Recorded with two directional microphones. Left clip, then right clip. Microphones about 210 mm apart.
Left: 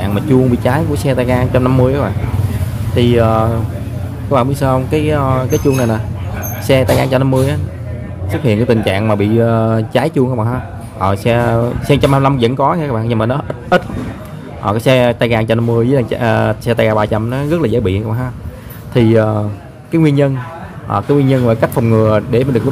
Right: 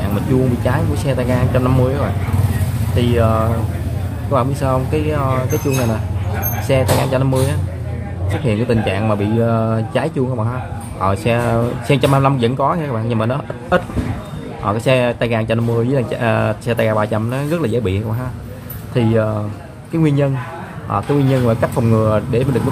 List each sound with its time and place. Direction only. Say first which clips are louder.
0.7 s speech: left 5 dB; 20° left (ahead or behind)